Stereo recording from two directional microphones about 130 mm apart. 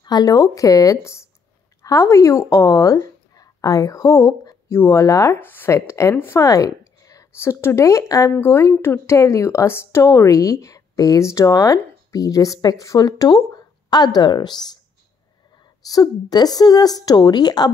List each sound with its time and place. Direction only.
0.0 s a woman's voice: 30° left (ahead or behind)